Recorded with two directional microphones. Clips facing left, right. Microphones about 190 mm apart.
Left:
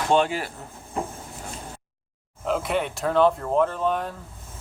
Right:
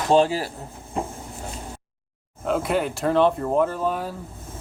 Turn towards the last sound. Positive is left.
turn(degrees=-5)  # may be behind; listen again after turning